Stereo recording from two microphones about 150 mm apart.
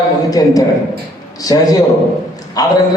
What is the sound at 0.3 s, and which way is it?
A man's voice, 25° left (ahead or behind).